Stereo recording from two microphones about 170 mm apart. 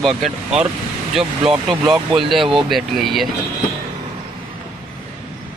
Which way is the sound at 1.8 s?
20° right (ahead or behind).